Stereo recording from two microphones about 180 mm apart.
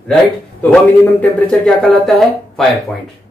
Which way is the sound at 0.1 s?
5° left (ahead or behind).